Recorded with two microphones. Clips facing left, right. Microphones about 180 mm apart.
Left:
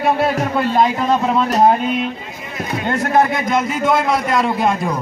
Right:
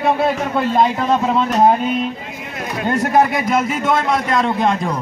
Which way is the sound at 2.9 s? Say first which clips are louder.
Right 1 dB; 15° right (ahead or behind).